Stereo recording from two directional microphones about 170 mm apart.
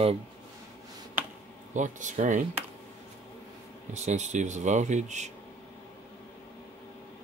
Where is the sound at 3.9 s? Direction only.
45° right (ahead or behind).